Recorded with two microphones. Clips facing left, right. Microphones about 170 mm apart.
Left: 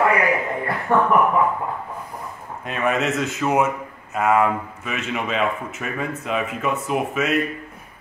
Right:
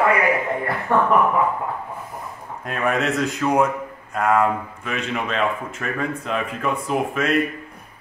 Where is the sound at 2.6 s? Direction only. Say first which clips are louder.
Even; centre (ahead or behind).